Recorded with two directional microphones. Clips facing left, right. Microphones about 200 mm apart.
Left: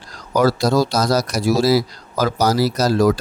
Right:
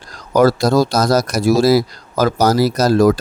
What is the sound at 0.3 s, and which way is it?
A man's voice, 50° right (ahead or behind).